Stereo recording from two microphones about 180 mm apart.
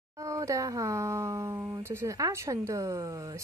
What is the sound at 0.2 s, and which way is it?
Speech, 15° right (ahead or behind).